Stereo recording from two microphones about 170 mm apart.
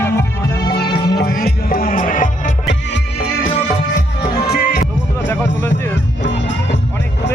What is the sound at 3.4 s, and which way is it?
Music, 30° left (ahead or behind).